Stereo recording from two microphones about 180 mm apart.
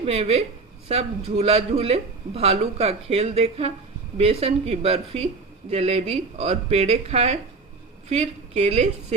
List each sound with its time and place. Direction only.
0.0 s speech: 35° right (ahead or behind)